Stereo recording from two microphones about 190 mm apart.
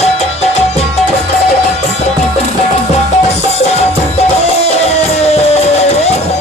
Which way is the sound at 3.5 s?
35° left (ahead or behind).